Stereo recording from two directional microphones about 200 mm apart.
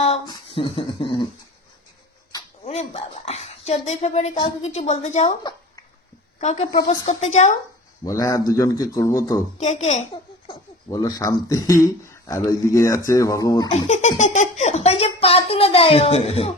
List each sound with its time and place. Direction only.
0.0 s speech: 30° left (ahead or behind)
2.6 s speech: 30° left (ahead or behind)
5.4 s a sound: 20° left (ahead or behind)
6.4 s speech: 35° left (ahead or behind)
8.0 s speech: 15° left (ahead or behind)
9.6 s speech: 35° left (ahead or behind)
10.1 s speech: 20° left (ahead or behind)
13.7 s speech: 35° left (ahead or behind)